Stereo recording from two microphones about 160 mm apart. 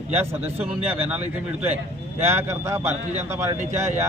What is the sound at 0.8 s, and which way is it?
Speech, 10° right (ahead or behind).